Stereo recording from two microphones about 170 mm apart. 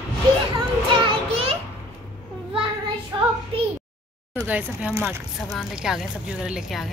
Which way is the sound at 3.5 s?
35° right (ahead or behind).